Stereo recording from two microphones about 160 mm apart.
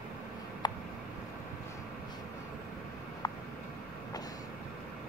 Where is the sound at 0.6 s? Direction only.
25° left (ahead or behind).